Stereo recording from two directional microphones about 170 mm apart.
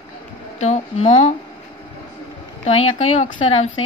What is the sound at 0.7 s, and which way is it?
Speech, 40° left (ahead or behind).